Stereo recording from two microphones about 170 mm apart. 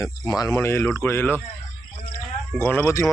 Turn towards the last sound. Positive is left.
turn(degrees=15)  # may be behind; listen again after turning